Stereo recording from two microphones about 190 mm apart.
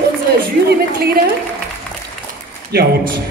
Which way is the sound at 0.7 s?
55° right (ahead or behind).